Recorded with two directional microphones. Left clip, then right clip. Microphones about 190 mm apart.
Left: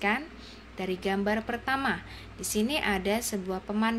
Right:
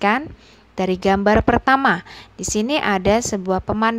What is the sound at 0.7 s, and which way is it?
A woman's voice, 50° right (ahead or behind).